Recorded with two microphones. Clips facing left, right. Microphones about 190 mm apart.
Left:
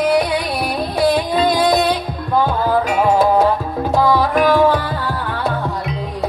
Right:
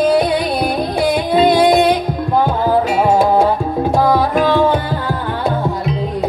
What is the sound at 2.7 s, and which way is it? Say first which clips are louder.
Music: right 3 dB; 10° right (ahead or behind).